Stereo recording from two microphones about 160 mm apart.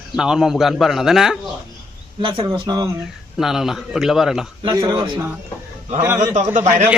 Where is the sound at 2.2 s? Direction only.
35° right (ahead or behind).